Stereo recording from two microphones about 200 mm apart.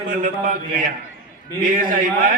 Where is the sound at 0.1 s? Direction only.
45° right (ahead or behind).